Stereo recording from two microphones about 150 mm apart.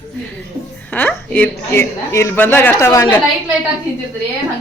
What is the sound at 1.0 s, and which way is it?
A woman's voice, 10° left (ahead or behind).